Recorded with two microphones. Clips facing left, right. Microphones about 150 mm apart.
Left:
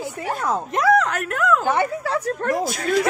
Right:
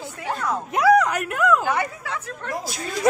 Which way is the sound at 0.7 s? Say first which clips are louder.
Right 2 dB; 5° right (ahead or behind).